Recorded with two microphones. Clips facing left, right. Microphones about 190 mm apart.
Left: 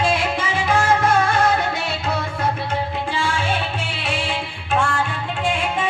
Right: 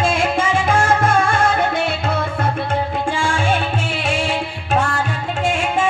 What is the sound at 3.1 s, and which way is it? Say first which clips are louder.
Music: right 3 dB; 45° right (ahead or behind).